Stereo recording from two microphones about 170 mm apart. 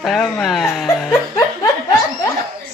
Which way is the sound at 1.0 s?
20° left (ahead or behind).